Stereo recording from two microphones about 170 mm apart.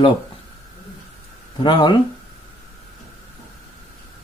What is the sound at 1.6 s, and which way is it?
Speech, 30° left (ahead or behind).